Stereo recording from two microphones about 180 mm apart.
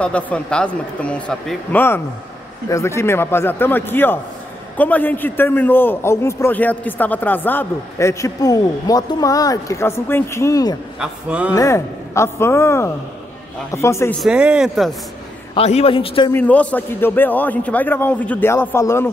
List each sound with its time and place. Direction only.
0.0 s a man's voice: 5° left (ahead or behind)
11.0 s a man's voice: 5° right (ahead or behind)
11.5 s a man's voice: 15° left (ahead or behind)
14.2 s speech: 5° right (ahead or behind)
15.5 s a man's voice: 35° left (ahead or behind)
16.3 s a man's voice: 10° left (ahead or behind)